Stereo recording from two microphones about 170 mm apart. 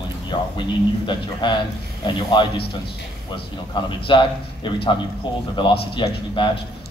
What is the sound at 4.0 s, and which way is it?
A man's voice, 30° left (ahead or behind).